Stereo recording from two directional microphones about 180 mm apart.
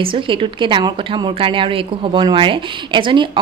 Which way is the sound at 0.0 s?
30° right (ahead or behind).